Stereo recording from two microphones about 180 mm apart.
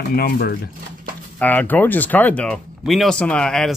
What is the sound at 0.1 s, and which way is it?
Speech, 60° left (ahead or behind).